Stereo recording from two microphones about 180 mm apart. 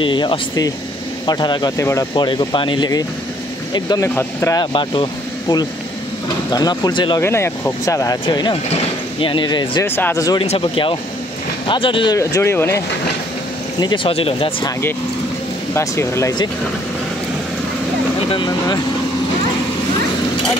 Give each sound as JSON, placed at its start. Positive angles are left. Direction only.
{"t": 0.0, "sound": "speech", "side_deg": 25}
{"t": 7.2, "sound": "speech", "side_deg": 15}
{"t": 9.8, "sound": "speech", "side_deg": 10}
{"t": 10.4, "sound": "speech", "side_deg": 35}
{"t": 13.7, "sound": "speech", "side_deg": 25}
{"t": 15.7, "sound": "speech", "side_deg": 15}
{"t": 18.3, "sound": "speech", "side_deg": 25}